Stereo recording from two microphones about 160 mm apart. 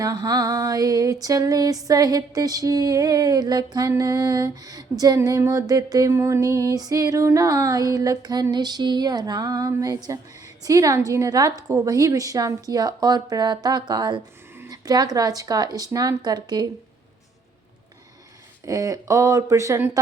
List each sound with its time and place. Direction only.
0.0 s music: 25° right (ahead or behind)
18.6 s music: 20° right (ahead or behind)